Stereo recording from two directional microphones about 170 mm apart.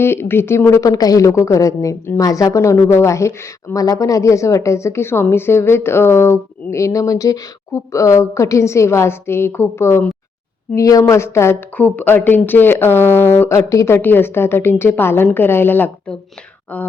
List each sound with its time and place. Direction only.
0.0 s speech: 15° left (ahead or behind)